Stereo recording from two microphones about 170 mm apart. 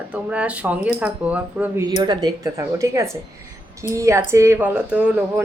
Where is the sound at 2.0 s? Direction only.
25° right (ahead or behind).